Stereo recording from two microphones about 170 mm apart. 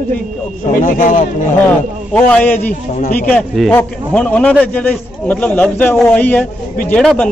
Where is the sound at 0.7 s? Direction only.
50° left (ahead or behind).